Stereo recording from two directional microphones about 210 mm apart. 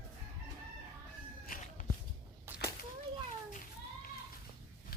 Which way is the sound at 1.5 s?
40° left (ahead or behind).